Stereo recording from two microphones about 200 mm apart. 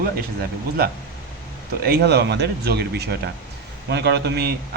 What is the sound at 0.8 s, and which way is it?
A man's voice, 50° right (ahead or behind).